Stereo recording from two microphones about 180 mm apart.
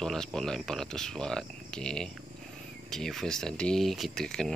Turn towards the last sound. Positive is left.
turn(degrees=5)  # may be behind; listen again after turning